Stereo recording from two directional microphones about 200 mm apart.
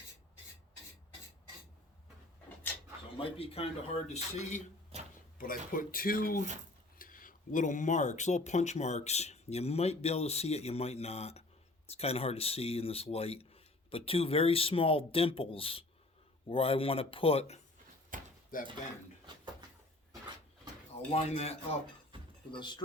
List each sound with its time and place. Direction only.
3.2 s speech: 30° left (ahead or behind)
4.9 s a sound: 30° right (ahead or behind)
5.4 s speech: 45° left (ahead or behind)
18.1 s a sound: 40° right (ahead or behind)
18.5 s speech: 45° left (ahead or behind)
21.1 s speech: 30° left (ahead or behind)